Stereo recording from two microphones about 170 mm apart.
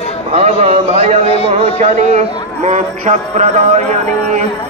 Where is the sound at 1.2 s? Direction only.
35° left (ahead or behind).